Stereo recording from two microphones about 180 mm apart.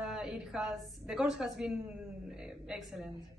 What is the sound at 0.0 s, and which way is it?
A woman's voice, 5° right (ahead or behind).